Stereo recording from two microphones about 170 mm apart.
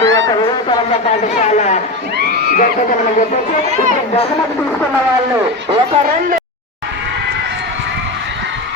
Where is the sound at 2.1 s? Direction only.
70° right (ahead or behind).